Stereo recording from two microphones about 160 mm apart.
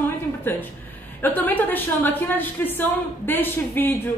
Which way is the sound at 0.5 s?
10° left (ahead or behind).